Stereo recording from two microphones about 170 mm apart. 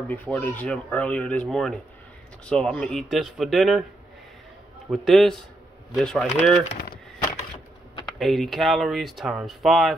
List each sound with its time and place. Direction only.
0.1 s speech: 10° left (ahead or behind)
4.9 s speech: centre (ahead or behind)
6.7 s a sound: 80° left
8.2 s speech: centre (ahead or behind)